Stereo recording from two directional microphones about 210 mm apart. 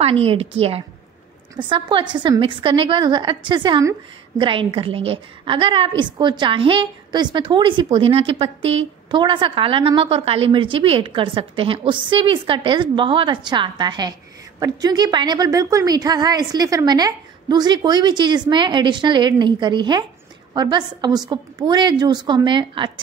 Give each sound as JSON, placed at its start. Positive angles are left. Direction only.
{"t": 0.0, "sound": "a woman's voice", "side_deg": -25}